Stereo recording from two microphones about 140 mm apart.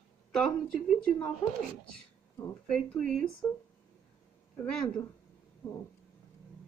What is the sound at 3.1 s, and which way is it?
Speech, 10° left (ahead or behind).